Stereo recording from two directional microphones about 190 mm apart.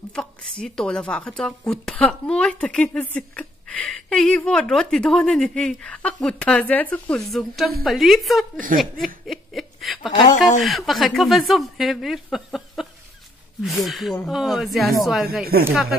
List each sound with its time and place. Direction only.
0.1 s speech: 5° left (ahead or behind)
9.2 s a sound: centre (ahead or behind)
10.1 s speech: 35° left (ahead or behind)
10.6 s speech: centre (ahead or behind)